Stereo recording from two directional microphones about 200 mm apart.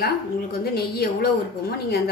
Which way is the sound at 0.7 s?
50° left (ahead or behind).